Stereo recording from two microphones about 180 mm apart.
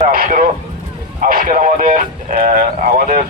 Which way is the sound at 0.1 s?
50° right (ahead or behind).